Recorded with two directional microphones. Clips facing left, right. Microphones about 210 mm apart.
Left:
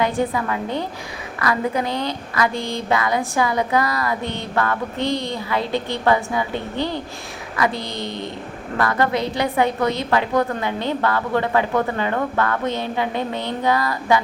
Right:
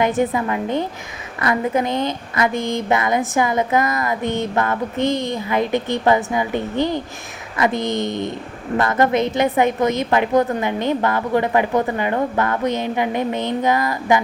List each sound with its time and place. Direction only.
0.0 s a woman's voice: 20° right (ahead or behind)